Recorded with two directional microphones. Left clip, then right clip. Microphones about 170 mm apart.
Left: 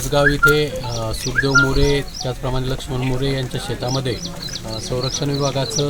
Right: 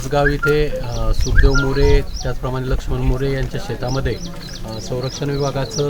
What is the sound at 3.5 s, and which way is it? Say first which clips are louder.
Speech: even; 40° right (ahead or behind).